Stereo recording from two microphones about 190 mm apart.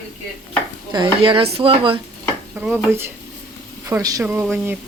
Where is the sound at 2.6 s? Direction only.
10° right (ahead or behind).